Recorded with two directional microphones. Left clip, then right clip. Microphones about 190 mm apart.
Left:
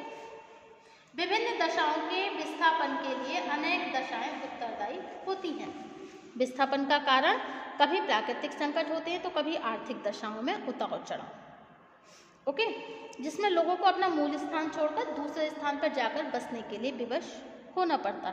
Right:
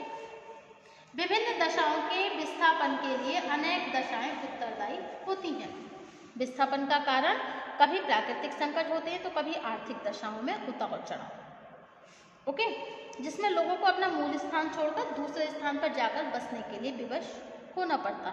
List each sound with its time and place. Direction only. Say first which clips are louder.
1.1 s a woman's voice: right 1 dB; 20° left (ahead or behind)
6.3 s a woman's voice: left 1 dB; 45° left (ahead or behind)
12.4 s a woman's voice: even; 35° left (ahead or behind)